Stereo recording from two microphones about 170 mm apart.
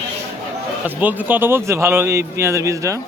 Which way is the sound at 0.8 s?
10° right (ahead or behind).